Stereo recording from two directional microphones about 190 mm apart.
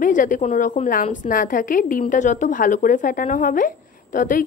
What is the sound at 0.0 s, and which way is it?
A woman's voice, 45° left (ahead or behind).